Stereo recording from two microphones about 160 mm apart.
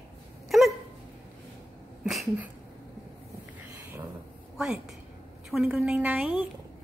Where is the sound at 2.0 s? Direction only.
Centre (ahead or behind).